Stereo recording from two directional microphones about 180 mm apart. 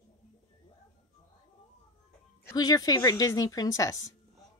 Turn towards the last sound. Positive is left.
turn(degrees=20)  # may be behind; listen again after turning